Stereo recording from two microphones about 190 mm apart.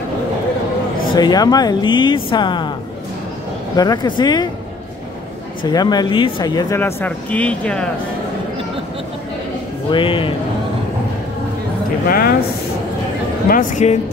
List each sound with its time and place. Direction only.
1.1 s speech: 20° left (ahead or behind)
3.7 s speech: 20° left (ahead or behind)
5.6 s speech: 20° left (ahead or behind)
6.8 s speech: 10° left (ahead or behind)
9.8 s speech: 25° left (ahead or behind)
12.1 s speech: 50° left (ahead or behind)
13.5 s speech: 45° left (ahead or behind)